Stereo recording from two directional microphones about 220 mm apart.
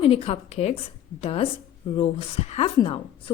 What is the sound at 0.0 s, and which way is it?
A woman's voice, 25° left (ahead or behind).